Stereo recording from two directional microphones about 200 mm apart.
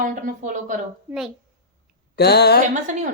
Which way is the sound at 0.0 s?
45° right (ahead or behind).